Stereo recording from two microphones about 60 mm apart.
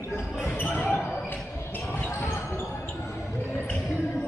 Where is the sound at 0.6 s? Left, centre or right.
Left.